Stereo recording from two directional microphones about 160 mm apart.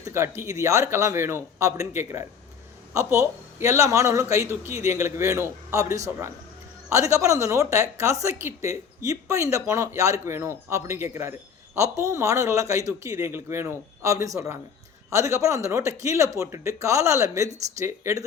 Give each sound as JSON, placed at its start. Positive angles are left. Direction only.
{"t": 0.0, "sound": "a man's voice", "side_deg": -15}
{"t": 6.9, "sound": "speech", "side_deg": -20}